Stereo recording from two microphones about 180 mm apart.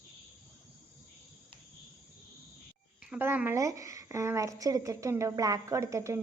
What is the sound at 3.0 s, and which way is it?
A woman's voice, 10° right (ahead or behind).